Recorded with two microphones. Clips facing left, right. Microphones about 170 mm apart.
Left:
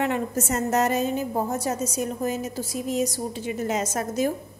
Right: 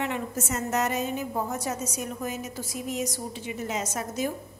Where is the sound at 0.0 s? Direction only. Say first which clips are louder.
Left 5 dB; 40° left (ahead or behind).